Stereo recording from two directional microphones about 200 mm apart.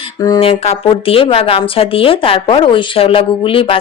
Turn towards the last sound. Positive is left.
turn(degrees=25)  # may be behind; listen again after turning